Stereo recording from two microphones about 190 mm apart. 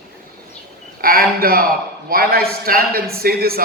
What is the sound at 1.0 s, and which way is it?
A man's voice, 50° right (ahead or behind).